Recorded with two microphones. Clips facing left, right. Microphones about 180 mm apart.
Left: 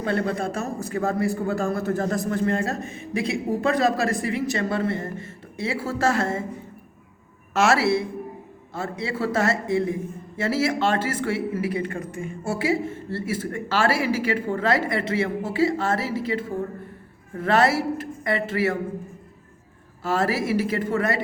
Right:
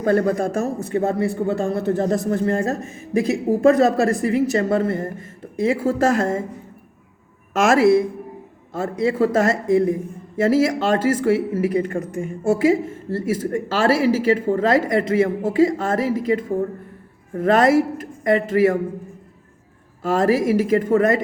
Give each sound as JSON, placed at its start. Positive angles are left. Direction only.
{"t": 0.0, "sound": "a man's voice", "side_deg": -45}
{"t": 0.9, "sound": "a man's voice", "side_deg": -30}
{"t": 7.6, "sound": "a man's voice", "side_deg": -45}
{"t": 20.0, "sound": "a man's voice", "side_deg": -45}